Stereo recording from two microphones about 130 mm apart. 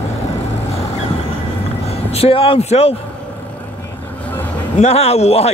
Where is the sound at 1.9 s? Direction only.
50° left (ahead or behind).